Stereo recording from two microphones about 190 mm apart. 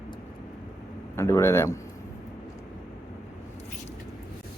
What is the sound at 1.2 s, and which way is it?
Speech, 15° left (ahead or behind).